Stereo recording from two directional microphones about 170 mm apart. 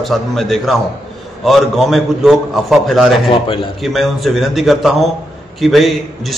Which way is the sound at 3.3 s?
30° left (ahead or behind).